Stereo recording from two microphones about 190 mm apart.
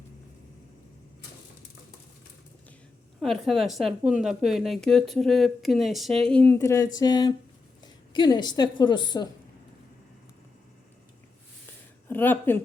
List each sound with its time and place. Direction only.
3.2 s a woman's voice: centre (ahead or behind); by 9.3 s 20° left (ahead or behind)
12.0 s speech: 10° left (ahead or behind)